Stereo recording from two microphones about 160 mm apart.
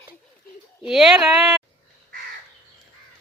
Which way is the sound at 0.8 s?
Centre (ahead or behind).